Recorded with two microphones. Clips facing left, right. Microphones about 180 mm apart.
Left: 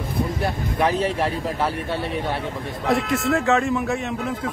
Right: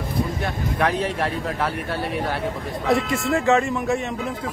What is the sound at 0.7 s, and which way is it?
Speech, centre (ahead or behind).